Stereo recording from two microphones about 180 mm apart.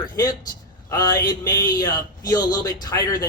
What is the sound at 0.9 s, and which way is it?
A man's voice, 20° left (ahead or behind).